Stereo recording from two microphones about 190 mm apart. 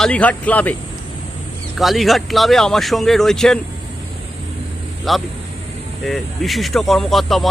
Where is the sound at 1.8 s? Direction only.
Centre (ahead or behind).